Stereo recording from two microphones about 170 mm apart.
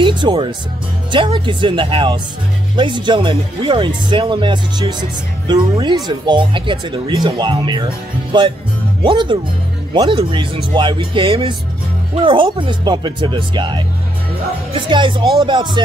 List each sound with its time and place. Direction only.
0.0 s speech: 25° right (ahead or behind)